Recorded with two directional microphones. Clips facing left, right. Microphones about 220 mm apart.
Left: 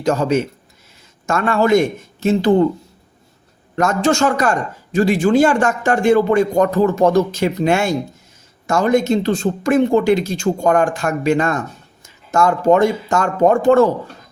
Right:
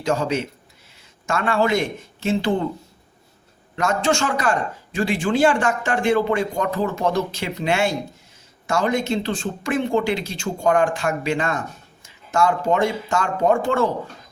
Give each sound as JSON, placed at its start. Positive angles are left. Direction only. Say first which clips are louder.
{"t": 0.0, "sound": "speech", "louder": "left 5 dB", "side_deg": 45}
{"t": 3.8, "sound": "speech", "louder": "left 5 dB", "side_deg": 45}